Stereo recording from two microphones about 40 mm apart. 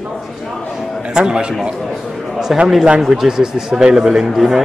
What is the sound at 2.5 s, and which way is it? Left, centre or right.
Speech, centre.